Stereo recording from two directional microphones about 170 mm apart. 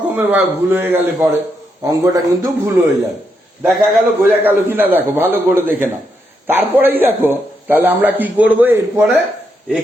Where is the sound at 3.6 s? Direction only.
5° right (ahead or behind).